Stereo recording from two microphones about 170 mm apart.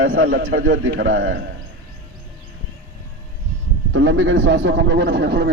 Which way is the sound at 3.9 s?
90° right.